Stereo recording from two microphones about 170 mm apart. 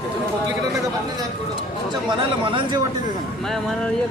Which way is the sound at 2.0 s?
30° right (ahead or behind).